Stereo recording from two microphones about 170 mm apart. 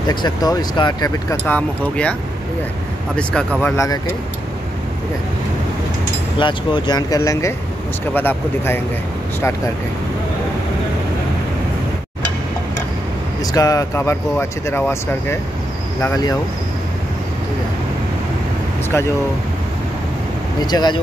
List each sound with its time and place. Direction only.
0.1 s speech: 25° left (ahead or behind)
1.4 s speech: 10° left (ahead or behind)
3.2 s speech: 5° left (ahead or behind)
3.7 s speech: 20° left (ahead or behind)
6.3 s speech: 25° left (ahead or behind); by 8.8 s 10° left (ahead or behind)
13.4 s speech: 20° left (ahead or behind)
20.6 s speech: 25° left (ahead or behind)